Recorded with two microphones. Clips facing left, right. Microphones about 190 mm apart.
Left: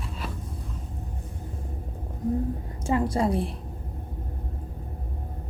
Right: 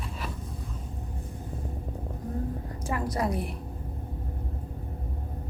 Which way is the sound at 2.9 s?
25° left (ahead or behind).